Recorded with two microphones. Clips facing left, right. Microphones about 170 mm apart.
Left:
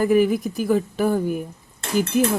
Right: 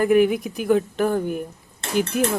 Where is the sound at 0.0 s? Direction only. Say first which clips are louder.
Even; centre (ahead or behind).